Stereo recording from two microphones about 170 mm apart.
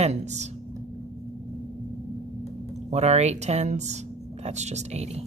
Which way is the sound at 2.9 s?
40° right (ahead or behind).